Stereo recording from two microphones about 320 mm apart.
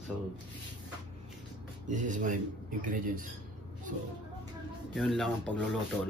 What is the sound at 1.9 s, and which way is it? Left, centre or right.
Speech, right.